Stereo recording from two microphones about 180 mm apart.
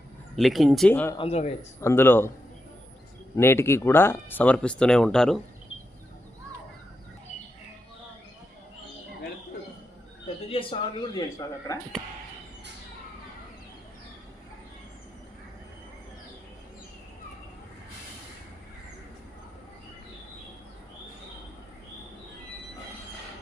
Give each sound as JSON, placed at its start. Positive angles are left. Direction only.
{"t": 0.3, "sound": "speech", "side_deg": 0}
{"t": 1.2, "sound": "a man's voice", "side_deg": 35}
{"t": 1.8, "sound": "speech", "side_deg": 15}
{"t": 3.3, "sound": "speech", "side_deg": 15}
{"t": 10.5, "sound": "speech", "side_deg": 30}